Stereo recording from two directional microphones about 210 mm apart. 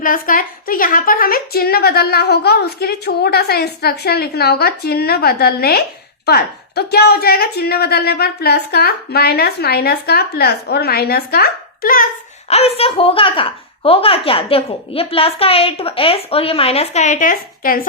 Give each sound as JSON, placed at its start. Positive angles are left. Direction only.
{"t": 0.0, "sound": "a woman's voice", "side_deg": 40}
{"t": 12.5, "sound": "a woman's voice", "side_deg": 30}